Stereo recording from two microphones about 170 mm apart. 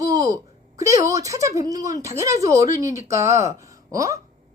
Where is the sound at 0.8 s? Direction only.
20° right (ahead or behind).